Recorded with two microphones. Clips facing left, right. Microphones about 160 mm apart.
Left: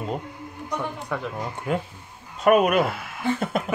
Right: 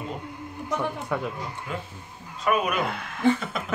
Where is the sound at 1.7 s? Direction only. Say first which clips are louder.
Left 7 dB; 55° left (ahead or behind).